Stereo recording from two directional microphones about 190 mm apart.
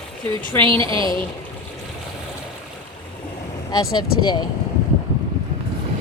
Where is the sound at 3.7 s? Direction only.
20° left (ahead or behind).